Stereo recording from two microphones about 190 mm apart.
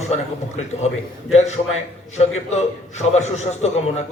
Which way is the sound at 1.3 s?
35° left (ahead or behind).